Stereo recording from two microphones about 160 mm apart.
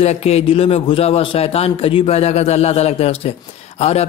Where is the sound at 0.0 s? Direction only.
40° left (ahead or behind).